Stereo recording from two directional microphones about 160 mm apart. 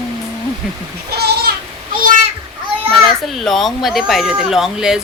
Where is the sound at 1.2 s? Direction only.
85° right.